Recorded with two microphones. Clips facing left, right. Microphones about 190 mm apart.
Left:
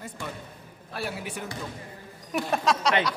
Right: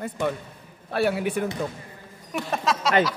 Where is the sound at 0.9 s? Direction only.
65° right (ahead or behind).